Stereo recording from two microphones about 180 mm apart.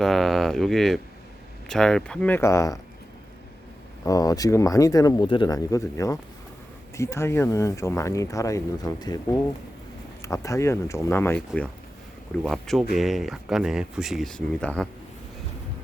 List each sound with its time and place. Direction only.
0.0 s speech: centre (ahead or behind)
4.0 s speech: 20° left (ahead or behind)